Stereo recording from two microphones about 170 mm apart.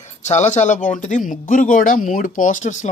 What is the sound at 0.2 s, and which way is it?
Speech, 45° left (ahead or behind).